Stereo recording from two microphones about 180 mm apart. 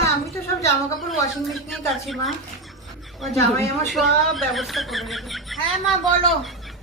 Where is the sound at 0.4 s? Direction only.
15° left (ahead or behind).